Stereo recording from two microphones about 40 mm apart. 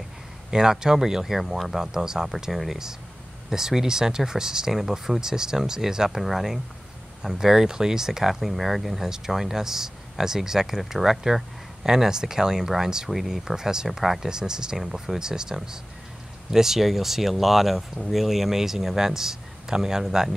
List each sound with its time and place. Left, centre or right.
0.5 s speech: centre
1.8 s speech: centre
3.4 s speech: centre
14.8 s speech: centre
15.1 s speech: centre